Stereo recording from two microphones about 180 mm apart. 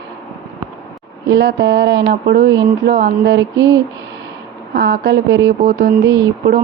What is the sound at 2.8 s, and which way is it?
Speech, 60° right (ahead or behind).